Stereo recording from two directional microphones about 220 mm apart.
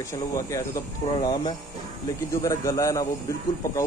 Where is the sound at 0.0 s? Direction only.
15° left (ahead or behind).